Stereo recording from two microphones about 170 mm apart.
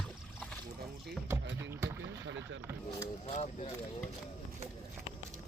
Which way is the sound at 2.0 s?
90° right.